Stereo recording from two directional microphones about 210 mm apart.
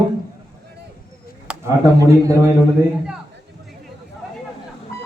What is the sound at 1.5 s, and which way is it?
Speech, 15° right (ahead or behind).